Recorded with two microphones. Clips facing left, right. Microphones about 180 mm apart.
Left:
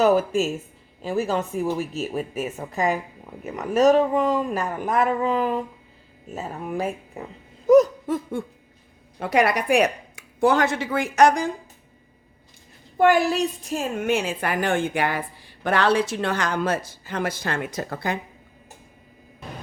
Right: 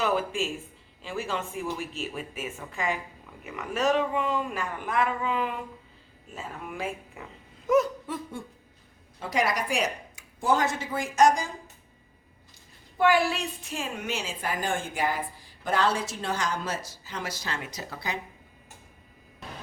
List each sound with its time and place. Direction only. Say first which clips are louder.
0.0 s speech: left 8 dB; 40° left (ahead or behind)
7.7 s a sound: left 8 dB; 40° left (ahead or behind)
9.1 s a woman's voice: left 7 dB; 65° left (ahead or behind)
13.0 s a woman's voice: left 5 dB; 45° left (ahead or behind)